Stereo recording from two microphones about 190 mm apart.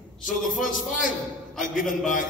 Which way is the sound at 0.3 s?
Centre (ahead or behind).